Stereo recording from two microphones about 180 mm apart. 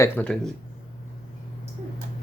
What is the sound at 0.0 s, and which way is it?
Speech, 10° left (ahead or behind).